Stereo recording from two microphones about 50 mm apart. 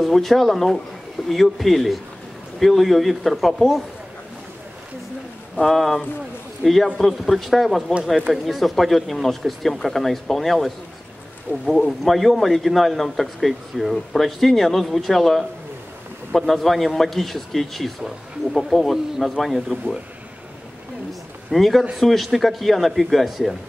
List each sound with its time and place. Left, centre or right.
0.0 s speech: centre
5.6 s speech: centre
11.5 s speech: left
12.0 s speech: centre
21.1 s a sound: centre
21.9 s speech: centre